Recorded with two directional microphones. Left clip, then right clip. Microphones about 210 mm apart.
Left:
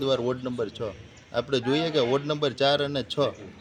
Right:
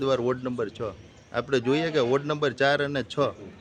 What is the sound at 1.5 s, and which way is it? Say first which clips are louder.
Speech: right 2 dB; 30° right (ahead or behind).